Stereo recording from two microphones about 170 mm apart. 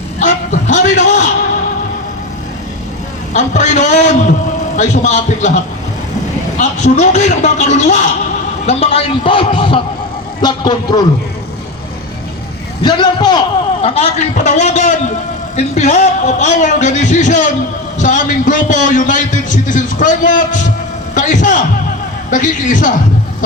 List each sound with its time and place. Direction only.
0.2 s music: 45° left (ahead or behind)
3.3 s a man's voice: 45° left (ahead or behind)
6.6 s a man's voice: 40° left (ahead or behind); by 11.0 s 25° left (ahead or behind)
12.8 s a man's voice: 25° left (ahead or behind)
13.8 s a man's voice: 40° left (ahead or behind)